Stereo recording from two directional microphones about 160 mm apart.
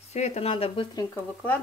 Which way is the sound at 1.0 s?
15° left (ahead or behind).